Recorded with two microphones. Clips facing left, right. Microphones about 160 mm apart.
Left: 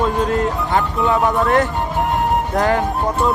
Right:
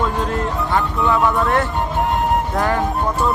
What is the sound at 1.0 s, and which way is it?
Speech, 20° left (ahead or behind).